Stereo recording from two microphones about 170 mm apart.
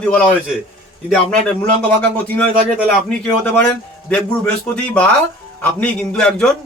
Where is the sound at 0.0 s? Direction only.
5° left (ahead or behind).